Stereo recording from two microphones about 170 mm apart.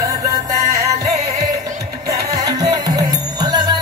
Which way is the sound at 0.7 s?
40° right (ahead or behind).